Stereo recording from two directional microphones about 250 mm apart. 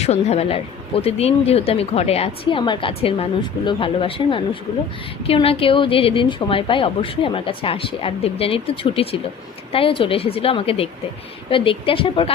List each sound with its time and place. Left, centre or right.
0.0 s speech: left